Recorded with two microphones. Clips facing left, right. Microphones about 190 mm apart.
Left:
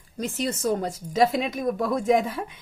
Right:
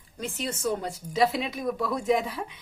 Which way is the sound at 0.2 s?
40° left (ahead or behind).